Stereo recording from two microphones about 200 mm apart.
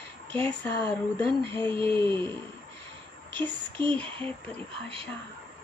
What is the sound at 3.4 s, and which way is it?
Speech, 10° left (ahead or behind).